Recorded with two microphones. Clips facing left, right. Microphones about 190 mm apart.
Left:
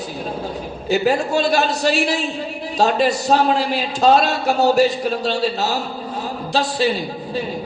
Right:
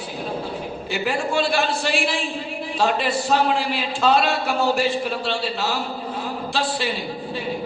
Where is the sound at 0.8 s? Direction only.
40° left (ahead or behind).